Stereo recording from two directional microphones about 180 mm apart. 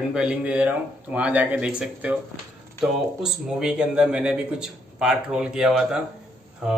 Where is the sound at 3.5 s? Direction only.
5° right (ahead or behind).